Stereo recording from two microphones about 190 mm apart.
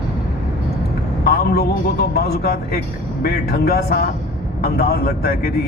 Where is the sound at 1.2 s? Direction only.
55° left (ahead or behind).